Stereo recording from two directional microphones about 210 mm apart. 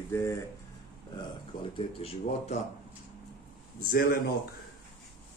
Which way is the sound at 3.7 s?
45° left (ahead or behind).